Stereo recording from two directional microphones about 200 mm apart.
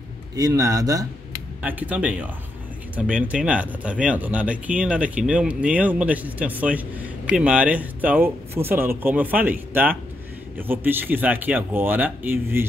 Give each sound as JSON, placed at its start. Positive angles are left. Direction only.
{"t": 0.4, "sound": "speech", "side_deg": -15}